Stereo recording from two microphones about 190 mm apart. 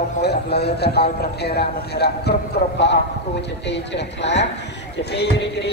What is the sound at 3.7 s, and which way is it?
A man's voice, 65° left (ahead or behind).